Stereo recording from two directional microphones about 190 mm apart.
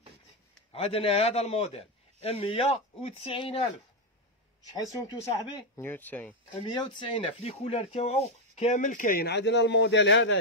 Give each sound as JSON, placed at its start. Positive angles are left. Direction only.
{"t": 0.7, "sound": "a man's voice", "side_deg": 30}
{"t": 5.8, "sound": "speech", "side_deg": 10}
{"t": 6.5, "sound": "speech", "side_deg": 25}